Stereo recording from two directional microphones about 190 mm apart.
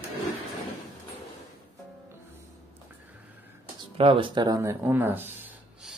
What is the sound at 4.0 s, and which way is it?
Speech, 30° right (ahead or behind).